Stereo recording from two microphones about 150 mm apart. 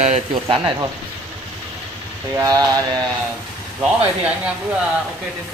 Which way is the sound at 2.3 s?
25° right (ahead or behind).